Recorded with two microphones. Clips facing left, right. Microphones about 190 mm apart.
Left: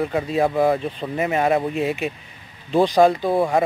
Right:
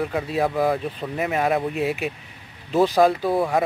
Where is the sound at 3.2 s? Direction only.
20° left (ahead or behind).